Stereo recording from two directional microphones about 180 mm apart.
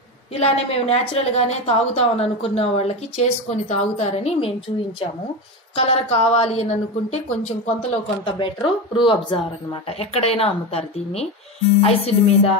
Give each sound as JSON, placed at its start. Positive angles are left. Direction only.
{"t": 0.3, "sound": "a woman's voice", "side_deg": 35}
{"t": 5.8, "sound": "a woman's voice", "side_deg": 35}